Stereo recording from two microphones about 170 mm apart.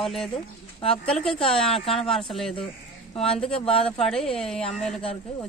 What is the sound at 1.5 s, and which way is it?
Speech, 5° left (ahead or behind).